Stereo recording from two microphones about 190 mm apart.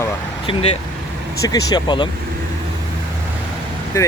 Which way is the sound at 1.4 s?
20° left (ahead or behind).